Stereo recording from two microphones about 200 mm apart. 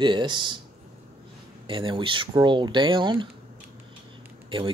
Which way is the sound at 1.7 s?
25° right (ahead or behind).